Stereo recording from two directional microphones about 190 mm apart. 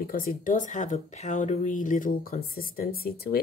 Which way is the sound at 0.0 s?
50° left (ahead or behind).